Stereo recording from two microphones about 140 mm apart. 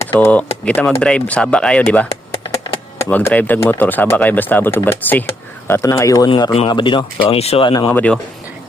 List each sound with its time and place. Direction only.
0.1 s speech: 10° left (ahead or behind)
6.2 s speech: 35° left (ahead or behind)
7.7 s speech: 30° left (ahead or behind)
7.9 s speech: 10° left (ahead or behind)